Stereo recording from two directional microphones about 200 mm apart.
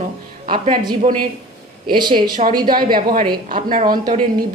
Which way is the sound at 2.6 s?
45° right (ahead or behind).